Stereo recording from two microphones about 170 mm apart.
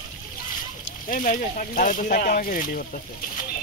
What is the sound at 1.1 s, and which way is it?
Speech, 50° left (ahead or behind).